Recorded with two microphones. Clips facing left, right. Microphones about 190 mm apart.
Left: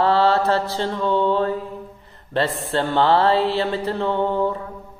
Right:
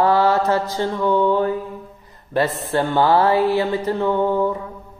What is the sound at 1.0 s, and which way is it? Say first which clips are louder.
Mantra: right 2 dB; 20° left (ahead or behind).